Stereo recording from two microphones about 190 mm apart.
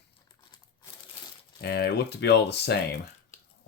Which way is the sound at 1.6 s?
60° left (ahead or behind).